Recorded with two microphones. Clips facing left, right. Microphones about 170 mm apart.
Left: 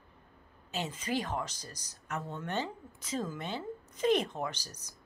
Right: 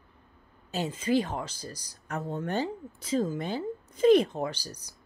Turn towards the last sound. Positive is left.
turn(degrees=-30)  # may be behind; listen again after turning